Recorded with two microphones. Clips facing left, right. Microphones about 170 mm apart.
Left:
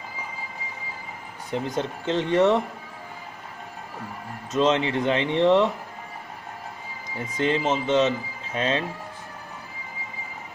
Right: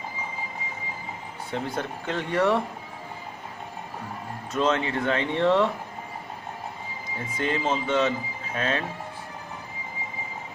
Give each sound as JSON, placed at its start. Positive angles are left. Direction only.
{"t": 1.5, "sound": "speech", "side_deg": 20}
{"t": 4.5, "sound": "speech", "side_deg": 20}
{"t": 7.2, "sound": "speech", "side_deg": 20}